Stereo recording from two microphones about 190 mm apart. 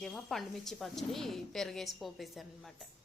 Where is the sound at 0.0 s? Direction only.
Centre (ahead or behind).